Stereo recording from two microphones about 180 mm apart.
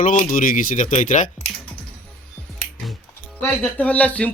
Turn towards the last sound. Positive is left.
turn(degrees=10)  # may be behind; listen again after turning